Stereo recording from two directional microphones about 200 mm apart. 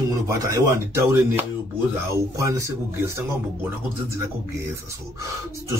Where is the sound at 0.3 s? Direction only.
15° right (ahead or behind).